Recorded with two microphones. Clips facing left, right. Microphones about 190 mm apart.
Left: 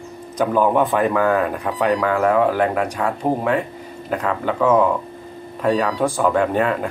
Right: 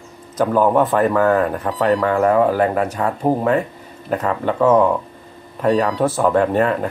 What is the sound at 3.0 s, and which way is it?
Speech, 10° left (ahead or behind).